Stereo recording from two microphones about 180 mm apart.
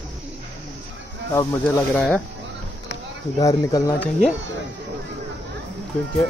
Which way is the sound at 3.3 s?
20° left (ahead or behind).